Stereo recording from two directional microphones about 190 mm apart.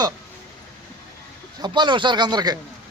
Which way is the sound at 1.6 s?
25° right (ahead or behind).